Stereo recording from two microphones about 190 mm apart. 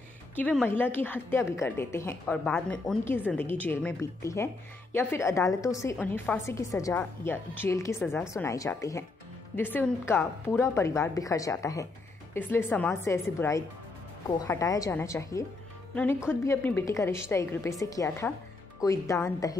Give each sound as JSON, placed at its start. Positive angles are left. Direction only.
{"t": 0.4, "sound": "a woman's voice", "side_deg": 5}